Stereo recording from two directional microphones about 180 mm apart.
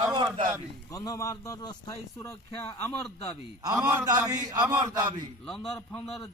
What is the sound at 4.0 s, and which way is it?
Speech, 20° right (ahead or behind).